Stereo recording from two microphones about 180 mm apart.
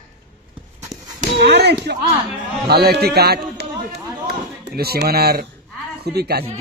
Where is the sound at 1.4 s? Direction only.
65° right (ahead or behind).